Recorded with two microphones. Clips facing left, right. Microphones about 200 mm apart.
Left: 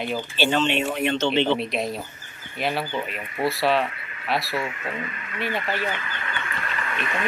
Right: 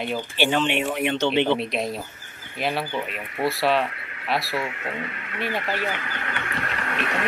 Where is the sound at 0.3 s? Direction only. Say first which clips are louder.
Even; 15° right (ahead or behind).